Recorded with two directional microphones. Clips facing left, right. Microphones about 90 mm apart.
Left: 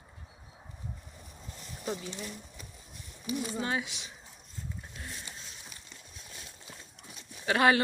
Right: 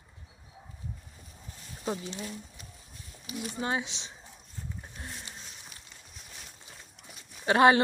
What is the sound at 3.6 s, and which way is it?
Speech, 25° right (ahead or behind).